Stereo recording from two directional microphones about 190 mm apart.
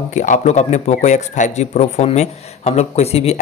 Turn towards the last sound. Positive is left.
turn(degrees=35)  # may be behind; listen again after turning